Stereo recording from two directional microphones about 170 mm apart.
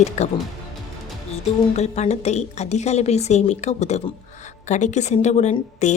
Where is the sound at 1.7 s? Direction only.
40° left (ahead or behind).